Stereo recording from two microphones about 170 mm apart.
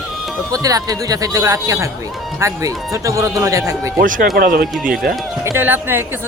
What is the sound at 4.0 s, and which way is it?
Speech, 55° right (ahead or behind).